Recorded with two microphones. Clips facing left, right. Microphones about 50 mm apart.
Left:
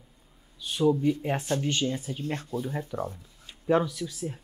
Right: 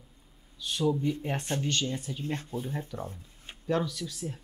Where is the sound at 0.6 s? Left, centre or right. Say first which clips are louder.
Left 4 dB; centre.